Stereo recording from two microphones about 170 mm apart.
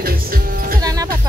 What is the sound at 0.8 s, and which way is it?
Music, 20° right (ahead or behind).